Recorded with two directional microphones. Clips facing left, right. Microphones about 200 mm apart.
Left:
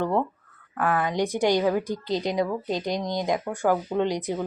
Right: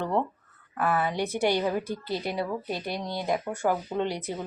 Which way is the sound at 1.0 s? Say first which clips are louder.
Left 3 dB; 15° left (ahead or behind).